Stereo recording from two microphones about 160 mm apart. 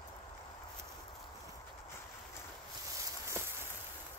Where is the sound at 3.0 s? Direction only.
15° right (ahead or behind).